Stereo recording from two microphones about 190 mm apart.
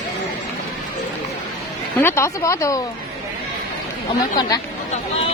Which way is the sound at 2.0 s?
15° left (ahead or behind).